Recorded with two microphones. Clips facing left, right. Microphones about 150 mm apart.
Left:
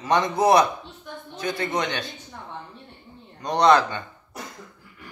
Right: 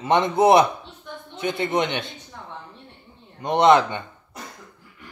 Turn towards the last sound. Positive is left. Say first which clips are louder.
# right 2 dB
turn(degrees=-20)  # may be behind; listen again after turning